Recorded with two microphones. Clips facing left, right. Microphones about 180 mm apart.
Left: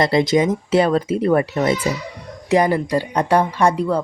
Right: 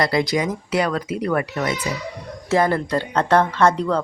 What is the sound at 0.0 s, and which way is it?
Speech, 25° left (ahead or behind).